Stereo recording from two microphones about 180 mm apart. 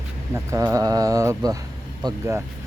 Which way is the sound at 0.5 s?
15° right (ahead or behind).